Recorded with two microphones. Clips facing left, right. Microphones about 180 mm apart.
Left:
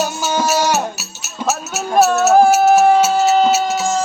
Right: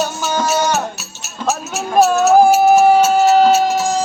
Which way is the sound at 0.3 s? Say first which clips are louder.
Even; 5° left (ahead or behind).